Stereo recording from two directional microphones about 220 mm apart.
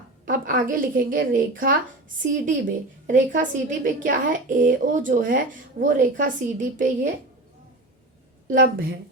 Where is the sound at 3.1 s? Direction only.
35° right (ahead or behind).